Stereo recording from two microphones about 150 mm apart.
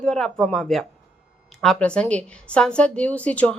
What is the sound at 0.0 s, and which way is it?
A woman's voice, 5° left (ahead or behind).